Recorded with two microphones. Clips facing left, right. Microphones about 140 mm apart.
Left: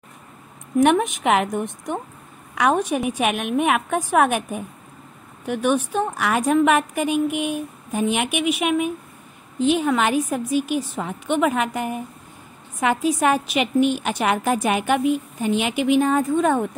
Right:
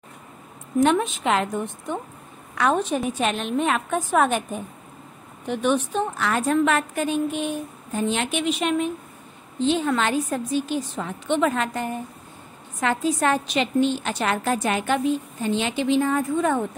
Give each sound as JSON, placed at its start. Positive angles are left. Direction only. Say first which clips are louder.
{"t": 0.7, "sound": "a woman's voice", "louder": "left 2 dB", "side_deg": 15}